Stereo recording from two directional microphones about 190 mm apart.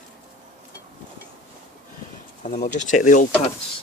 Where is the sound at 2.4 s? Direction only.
40° left (ahead or behind).